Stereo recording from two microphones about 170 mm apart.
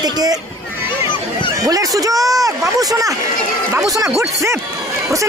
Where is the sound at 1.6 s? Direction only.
20° right (ahead or behind).